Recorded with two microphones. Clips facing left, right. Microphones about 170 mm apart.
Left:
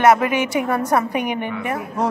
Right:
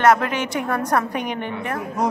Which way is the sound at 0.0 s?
10° left (ahead or behind).